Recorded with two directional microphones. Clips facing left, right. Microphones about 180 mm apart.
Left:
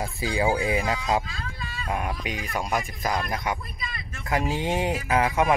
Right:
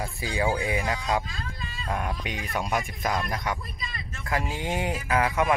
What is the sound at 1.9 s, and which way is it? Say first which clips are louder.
Speech: left 1 dB; 10° left (ahead or behind).